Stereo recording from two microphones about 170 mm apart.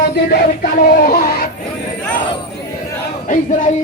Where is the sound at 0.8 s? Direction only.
55° left (ahead or behind).